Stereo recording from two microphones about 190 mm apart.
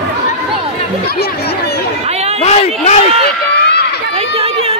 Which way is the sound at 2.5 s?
35° left (ahead or behind).